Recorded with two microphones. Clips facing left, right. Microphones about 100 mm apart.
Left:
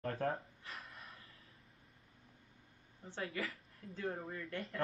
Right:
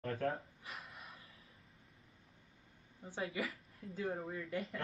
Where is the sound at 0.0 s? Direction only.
35° left (ahead or behind).